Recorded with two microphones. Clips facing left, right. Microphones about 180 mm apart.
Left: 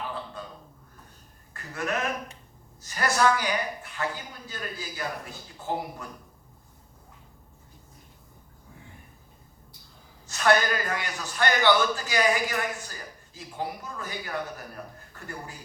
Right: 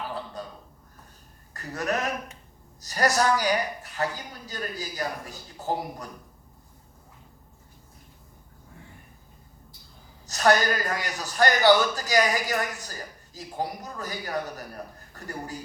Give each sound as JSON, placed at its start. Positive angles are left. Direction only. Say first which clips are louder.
{"t": 0.4, "sound": "a sound", "louder": "right 3 dB", "side_deg": -40}
{"t": 1.5, "sound": "a man's voice", "louder": "right 2 dB", "side_deg": -40}
{"t": 10.2, "sound": "a man's voice", "louder": "right 1 dB", "side_deg": -40}